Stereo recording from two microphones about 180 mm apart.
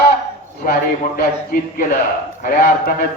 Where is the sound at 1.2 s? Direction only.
50° left (ahead or behind).